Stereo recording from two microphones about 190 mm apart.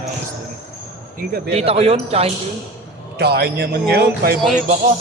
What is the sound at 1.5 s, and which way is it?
Speech, 30° right (ahead or behind).